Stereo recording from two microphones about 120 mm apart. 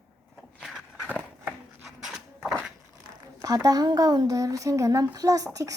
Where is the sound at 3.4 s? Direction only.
30° right (ahead or behind).